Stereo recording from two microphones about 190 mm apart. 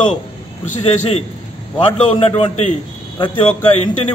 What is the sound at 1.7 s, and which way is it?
Speech, 25° left (ahead or behind).